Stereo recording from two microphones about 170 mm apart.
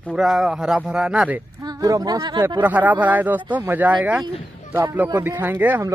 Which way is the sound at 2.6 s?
10° right (ahead or behind).